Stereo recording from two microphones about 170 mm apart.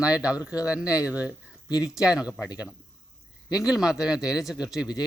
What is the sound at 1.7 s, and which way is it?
Speech, 20° left (ahead or behind).